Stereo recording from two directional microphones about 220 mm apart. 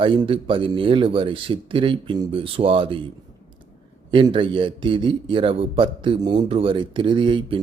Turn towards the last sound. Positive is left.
turn(degrees=-20)  # may be behind; listen again after turning